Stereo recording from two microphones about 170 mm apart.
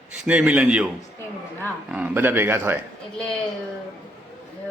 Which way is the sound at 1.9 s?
5° right (ahead or behind).